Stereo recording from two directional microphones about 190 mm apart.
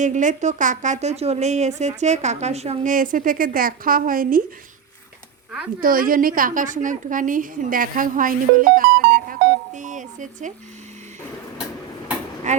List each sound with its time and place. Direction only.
0.0 s speech: 40° right (ahead or behind)
5.8 s a woman's voice: 45° right (ahead or behind)
12.5 s a sound: 40° right (ahead or behind)